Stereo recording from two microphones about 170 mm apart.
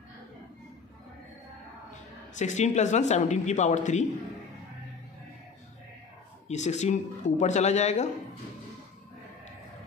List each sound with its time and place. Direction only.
2.3 s speech: 45° left (ahead or behind)
6.4 s speech: 40° left (ahead or behind)